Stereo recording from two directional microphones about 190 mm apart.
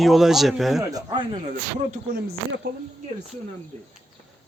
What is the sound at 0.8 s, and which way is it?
Speech, 20° right (ahead or behind).